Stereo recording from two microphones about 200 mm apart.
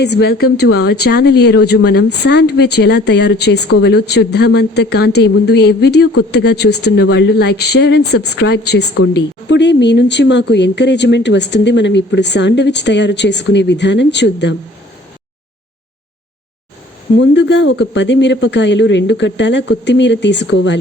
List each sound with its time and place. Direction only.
0.0 s speech: 55° left (ahead or behind)
17.2 s speech: 65° left (ahead or behind)